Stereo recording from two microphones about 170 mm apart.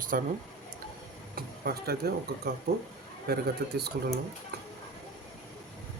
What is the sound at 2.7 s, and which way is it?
Speech, 60° right (ahead or behind).